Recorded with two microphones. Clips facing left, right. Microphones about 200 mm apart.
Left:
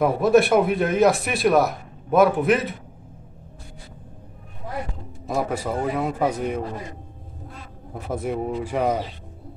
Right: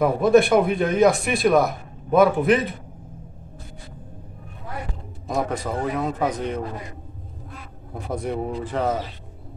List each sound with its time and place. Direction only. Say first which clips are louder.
0.0 s a man's voice: right 1 dB; centre (ahead or behind)
5.2 s a man's voice: even; centre (ahead or behind)
8.1 s a man's voice: left 1 dB; centre (ahead or behind)